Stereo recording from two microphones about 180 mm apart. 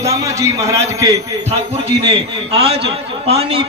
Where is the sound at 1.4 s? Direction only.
35° right (ahead or behind).